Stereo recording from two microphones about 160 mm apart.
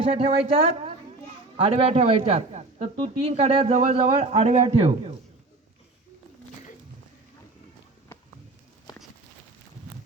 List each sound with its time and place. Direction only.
0.0 s speech: 35° right (ahead or behind)